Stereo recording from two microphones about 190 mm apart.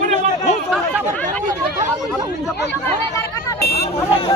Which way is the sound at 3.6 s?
55° left (ahead or behind).